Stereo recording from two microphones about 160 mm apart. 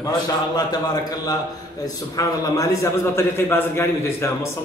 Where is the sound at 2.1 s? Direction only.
20° left (ahead or behind).